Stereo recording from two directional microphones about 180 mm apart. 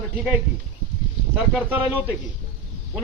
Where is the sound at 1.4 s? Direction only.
10° right (ahead or behind).